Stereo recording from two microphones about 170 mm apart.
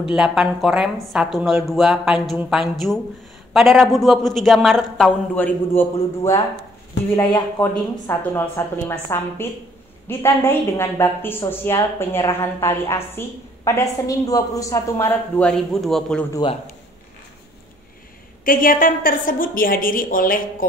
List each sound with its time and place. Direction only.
0.0 s a woman's voice: 5° right (ahead or behind)
5.8 s a woman's voice: 15° left (ahead or behind)
18.4 s a woman's voice: 55° left (ahead or behind)